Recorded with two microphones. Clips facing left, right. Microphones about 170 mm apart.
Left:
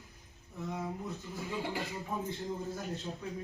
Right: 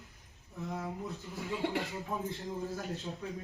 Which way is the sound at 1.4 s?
Centre (ahead or behind).